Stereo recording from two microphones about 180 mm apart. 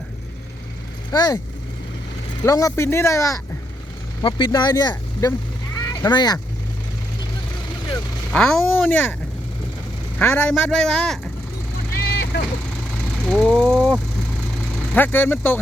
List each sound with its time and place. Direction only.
1.1 s speech: 20° left (ahead or behind)
2.4 s speech: 20° left (ahead or behind)
4.2 s speech: 25° left (ahead or behind)
8.3 s speech: 5° left (ahead or behind)
10.2 s speech: 10° left (ahead or behind)
12.0 s vehicle: 65° left (ahead or behind)
13.2 s speech: centre (ahead or behind)